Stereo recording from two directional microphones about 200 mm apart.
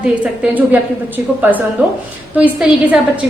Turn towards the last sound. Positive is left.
turn(degrees=-5)  # may be behind; listen again after turning